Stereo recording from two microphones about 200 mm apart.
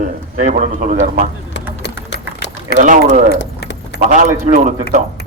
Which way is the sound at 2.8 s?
40° right (ahead or behind).